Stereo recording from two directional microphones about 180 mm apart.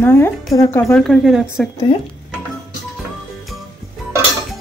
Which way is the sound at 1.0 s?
Centre (ahead or behind).